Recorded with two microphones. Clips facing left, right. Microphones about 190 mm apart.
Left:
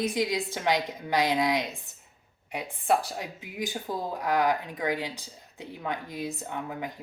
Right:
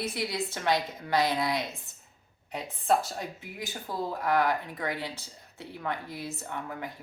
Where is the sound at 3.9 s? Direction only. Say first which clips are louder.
Right 1 dB; 15° left (ahead or behind).